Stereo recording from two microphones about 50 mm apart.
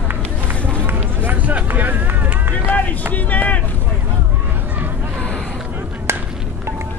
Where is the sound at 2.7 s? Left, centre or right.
Left.